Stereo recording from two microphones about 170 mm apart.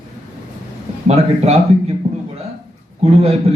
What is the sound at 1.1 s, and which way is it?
Speech, 40° right (ahead or behind).